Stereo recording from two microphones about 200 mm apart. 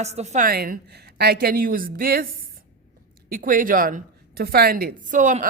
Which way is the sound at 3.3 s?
45° right (ahead or behind).